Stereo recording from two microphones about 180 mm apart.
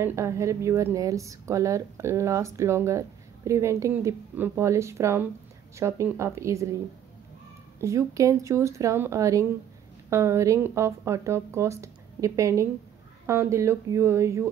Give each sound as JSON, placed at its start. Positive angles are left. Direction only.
{"t": 0.0, "sound": "a woman's voice", "side_deg": -15}
{"t": 7.8, "sound": "a woman's voice", "side_deg": -15}